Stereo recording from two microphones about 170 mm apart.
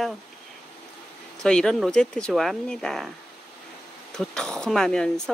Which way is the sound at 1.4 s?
5° left (ahead or behind).